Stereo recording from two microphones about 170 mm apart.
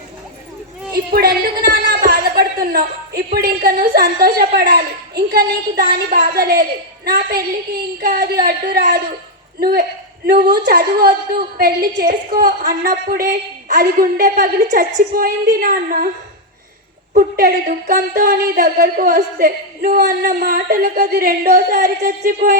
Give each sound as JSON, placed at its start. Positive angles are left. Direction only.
{"t": 0.9, "sound": "a sound", "side_deg": -65}
{"t": 3.3, "sound": "a woman's voice", "side_deg": -60}
{"t": 17.2, "sound": "a woman's voice", "side_deg": -55}